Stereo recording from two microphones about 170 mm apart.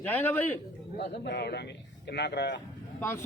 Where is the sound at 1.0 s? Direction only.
80° left.